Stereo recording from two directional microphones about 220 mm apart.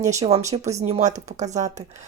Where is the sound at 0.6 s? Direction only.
30° right (ahead or behind).